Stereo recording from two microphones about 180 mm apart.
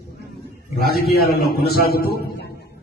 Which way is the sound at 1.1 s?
60° left (ahead or behind).